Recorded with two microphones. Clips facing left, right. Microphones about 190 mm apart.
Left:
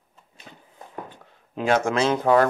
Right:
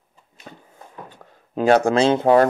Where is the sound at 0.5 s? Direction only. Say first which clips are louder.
Right 6 dB; 50° right (ahead or behind).